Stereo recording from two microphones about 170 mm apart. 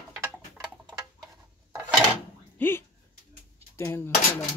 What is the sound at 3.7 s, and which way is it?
Dishes, 15° left (ahead or behind).